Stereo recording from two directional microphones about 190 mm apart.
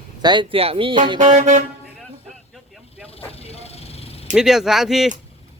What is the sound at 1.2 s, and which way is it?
Vehicle, 40° right (ahead or behind).